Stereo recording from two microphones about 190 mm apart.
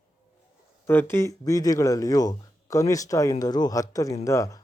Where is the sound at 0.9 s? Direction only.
10° left (ahead or behind).